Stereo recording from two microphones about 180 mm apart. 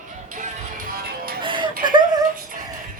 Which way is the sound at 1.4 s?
25° right (ahead or behind).